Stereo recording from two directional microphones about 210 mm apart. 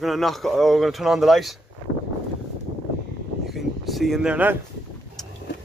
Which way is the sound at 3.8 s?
Centre (ahead or behind).